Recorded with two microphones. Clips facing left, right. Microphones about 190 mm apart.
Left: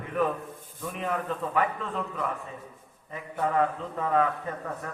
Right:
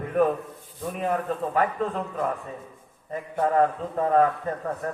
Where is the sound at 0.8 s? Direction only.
40° right (ahead or behind).